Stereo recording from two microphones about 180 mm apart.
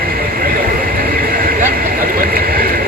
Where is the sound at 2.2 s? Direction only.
55° right (ahead or behind).